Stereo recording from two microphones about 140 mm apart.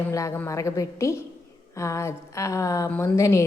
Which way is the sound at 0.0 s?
20° left (ahead or behind).